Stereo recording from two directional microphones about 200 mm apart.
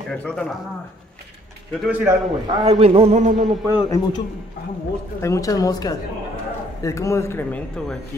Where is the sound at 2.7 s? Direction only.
30° right (ahead or behind).